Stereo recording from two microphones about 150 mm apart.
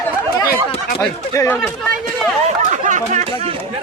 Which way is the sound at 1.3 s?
20° left (ahead or behind).